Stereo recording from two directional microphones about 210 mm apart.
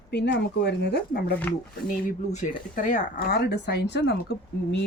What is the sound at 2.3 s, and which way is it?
A woman's voice, 35° left (ahead or behind).